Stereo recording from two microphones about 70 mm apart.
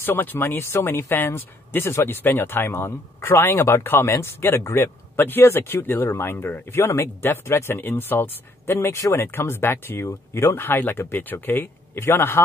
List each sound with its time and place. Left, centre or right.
0.0 s speech: left